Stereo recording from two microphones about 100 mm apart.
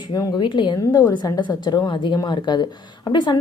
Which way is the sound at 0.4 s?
50° left (ahead or behind).